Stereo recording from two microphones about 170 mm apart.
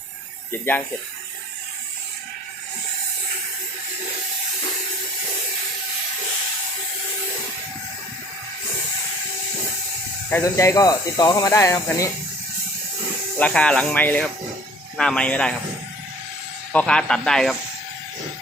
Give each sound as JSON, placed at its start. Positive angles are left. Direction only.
{"t": 0.5, "sound": "speech", "side_deg": 15}
{"t": 10.2, "sound": "speech", "side_deg": 15}
{"t": 13.4, "sound": "speech", "side_deg": 5}
{"t": 16.7, "sound": "speech", "side_deg": 5}